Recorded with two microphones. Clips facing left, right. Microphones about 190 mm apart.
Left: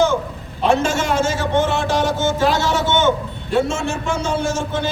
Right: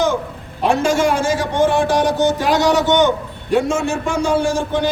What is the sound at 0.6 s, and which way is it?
A man's voice, 15° right (ahead or behind).